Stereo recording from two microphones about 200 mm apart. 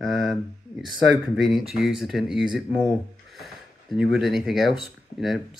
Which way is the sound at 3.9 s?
Centre (ahead or behind).